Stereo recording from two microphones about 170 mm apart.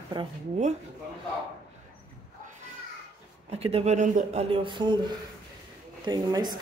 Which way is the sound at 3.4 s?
35° right (ahead or behind).